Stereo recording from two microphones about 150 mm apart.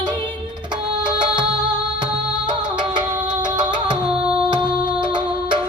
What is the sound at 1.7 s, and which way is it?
Music, 30° right (ahead or behind).